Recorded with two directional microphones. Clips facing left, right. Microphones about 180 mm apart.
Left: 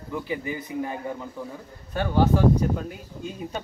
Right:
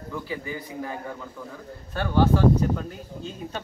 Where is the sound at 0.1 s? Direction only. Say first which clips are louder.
Left 3 dB; 20° left (ahead or behind).